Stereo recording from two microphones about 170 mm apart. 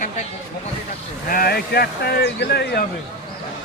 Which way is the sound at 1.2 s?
60° left (ahead or behind).